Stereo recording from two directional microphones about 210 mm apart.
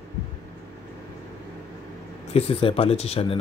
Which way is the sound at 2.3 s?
30° left (ahead or behind).